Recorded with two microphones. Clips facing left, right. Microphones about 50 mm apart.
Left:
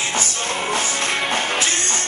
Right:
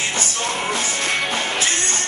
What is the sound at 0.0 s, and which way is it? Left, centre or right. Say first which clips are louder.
Music: even; left.